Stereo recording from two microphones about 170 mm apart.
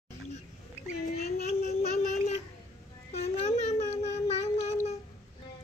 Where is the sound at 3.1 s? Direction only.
40° left (ahead or behind).